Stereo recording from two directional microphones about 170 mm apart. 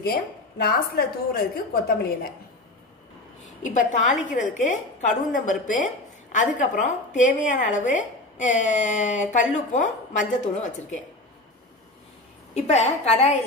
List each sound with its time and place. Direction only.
0.0 s a woman's voice: 65° left (ahead or behind)
3.6 s a woman's voice: 45° left (ahead or behind)
12.5 s a woman's voice: 40° left (ahead or behind)